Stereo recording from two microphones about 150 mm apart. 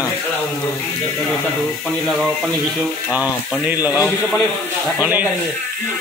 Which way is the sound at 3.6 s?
10° right (ahead or behind).